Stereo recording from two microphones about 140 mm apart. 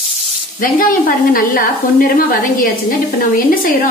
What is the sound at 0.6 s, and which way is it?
A woman's voice, 90° left.